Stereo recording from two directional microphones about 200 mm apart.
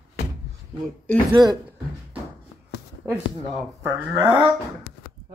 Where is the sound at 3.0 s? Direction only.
10° right (ahead or behind).